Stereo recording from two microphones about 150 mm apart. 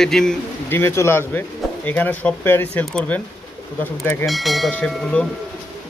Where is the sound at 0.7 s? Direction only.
15° left (ahead or behind).